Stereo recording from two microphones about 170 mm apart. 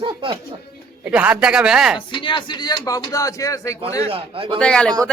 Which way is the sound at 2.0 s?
30° left (ahead or behind).